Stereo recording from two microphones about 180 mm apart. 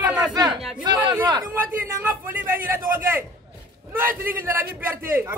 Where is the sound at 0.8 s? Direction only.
25° right (ahead or behind).